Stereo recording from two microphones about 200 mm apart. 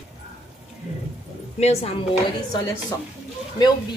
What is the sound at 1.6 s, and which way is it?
Speech, 30° left (ahead or behind).